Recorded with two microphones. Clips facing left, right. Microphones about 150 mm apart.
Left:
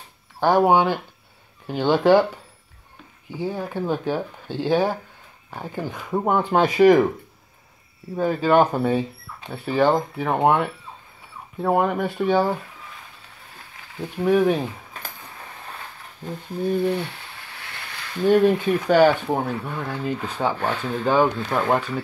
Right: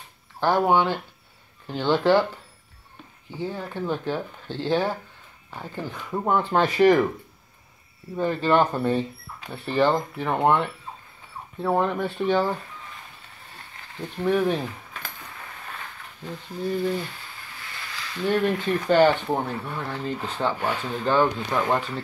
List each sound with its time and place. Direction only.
0.4 s speech: 15° left (ahead or behind)
8.2 s speech: 10° left (ahead or behind)
13.7 s speech: 5° left (ahead or behind)
16.6 s speech: 25° left (ahead or behind)
18.2 s speech: 15° left (ahead or behind)
20.5 s speech: 10° right (ahead or behind)
21.0 s speech: 10° left (ahead or behind)